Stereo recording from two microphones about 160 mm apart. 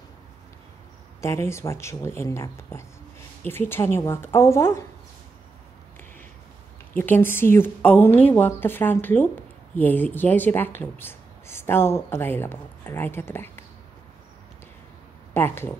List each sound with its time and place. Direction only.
1.2 s a woman's voice: 15° left (ahead or behind)
6.9 s a woman's voice: 10° left (ahead or behind)
15.3 s a woman's voice: 15° left (ahead or behind)